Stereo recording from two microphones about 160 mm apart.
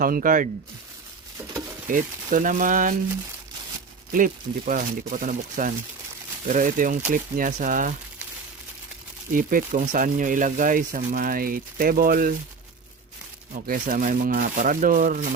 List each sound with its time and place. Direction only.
0.0 s speech: 60° right (ahead or behind)
1.9 s speech: 55° right (ahead or behind)
4.1 s speech: 55° right (ahead or behind)
9.3 s speech: 60° right (ahead or behind)
13.5 s speech: 60° right (ahead or behind)